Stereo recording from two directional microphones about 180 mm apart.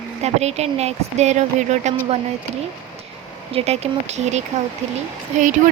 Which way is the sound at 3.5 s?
35° right (ahead or behind).